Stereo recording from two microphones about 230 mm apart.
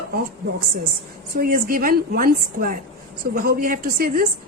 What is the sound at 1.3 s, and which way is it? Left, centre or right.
A woman's voice, right.